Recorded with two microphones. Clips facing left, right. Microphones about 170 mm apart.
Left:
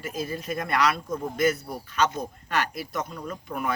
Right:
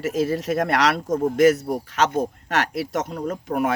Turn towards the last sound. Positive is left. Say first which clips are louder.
# right 7 dB
turn(degrees=-80)